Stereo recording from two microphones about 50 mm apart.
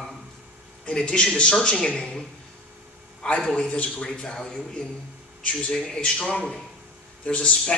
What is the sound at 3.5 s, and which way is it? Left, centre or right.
A man's voice, left.